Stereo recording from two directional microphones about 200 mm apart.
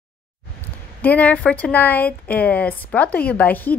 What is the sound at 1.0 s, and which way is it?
Speech, 10° left (ahead or behind).